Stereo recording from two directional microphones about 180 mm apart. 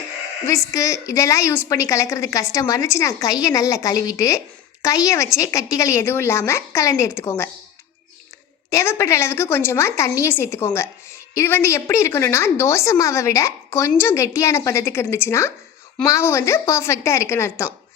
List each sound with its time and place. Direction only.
0.4 s a woman's voice: 15° left (ahead or behind)
8.7 s a woman's voice: 15° left (ahead or behind)